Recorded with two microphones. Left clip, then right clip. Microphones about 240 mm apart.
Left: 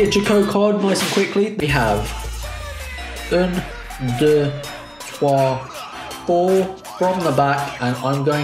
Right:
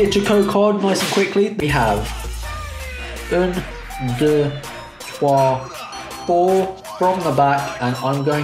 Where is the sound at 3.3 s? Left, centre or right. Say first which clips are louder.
Even; centre.